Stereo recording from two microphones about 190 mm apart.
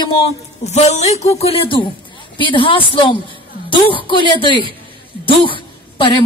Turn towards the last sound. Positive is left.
turn(degrees=30)  # may be behind; listen again after turning